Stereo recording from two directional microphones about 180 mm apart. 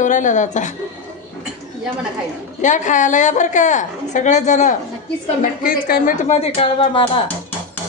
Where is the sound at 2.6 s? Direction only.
45° left (ahead or behind).